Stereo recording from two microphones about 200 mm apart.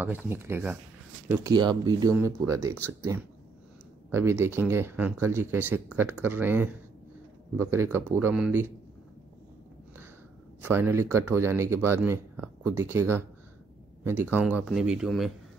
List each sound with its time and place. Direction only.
0.0 s speech: 10° right (ahead or behind)
10.6 s speech: 10° right (ahead or behind)